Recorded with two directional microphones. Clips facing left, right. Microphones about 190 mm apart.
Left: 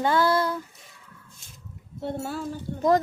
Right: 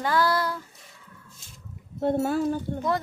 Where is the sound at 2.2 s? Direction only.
50° right (ahead or behind).